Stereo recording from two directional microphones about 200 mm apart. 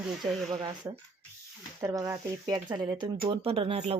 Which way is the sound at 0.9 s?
15° right (ahead or behind).